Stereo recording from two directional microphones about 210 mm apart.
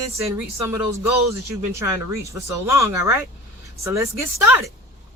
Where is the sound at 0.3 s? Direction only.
10° right (ahead or behind).